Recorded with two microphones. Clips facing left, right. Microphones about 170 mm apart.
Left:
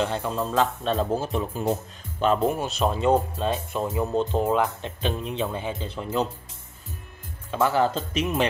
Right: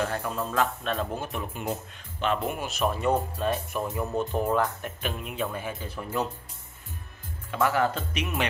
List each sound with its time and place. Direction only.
0.0 s speech: 20° left (ahead or behind)
7.5 s speech: 30° left (ahead or behind)